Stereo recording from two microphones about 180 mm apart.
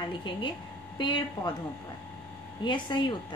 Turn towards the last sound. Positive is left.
turn(degrees=25)  # may be behind; listen again after turning